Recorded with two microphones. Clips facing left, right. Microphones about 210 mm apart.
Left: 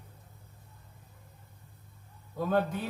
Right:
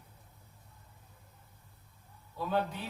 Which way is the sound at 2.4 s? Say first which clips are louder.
Left 4 dB; 50° left (ahead or behind).